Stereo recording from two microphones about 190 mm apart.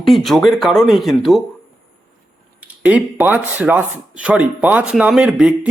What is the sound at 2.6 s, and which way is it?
Speech, 5° right (ahead or behind).